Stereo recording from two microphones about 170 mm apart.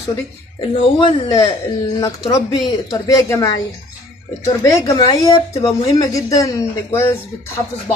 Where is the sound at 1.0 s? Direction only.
25° left (ahead or behind).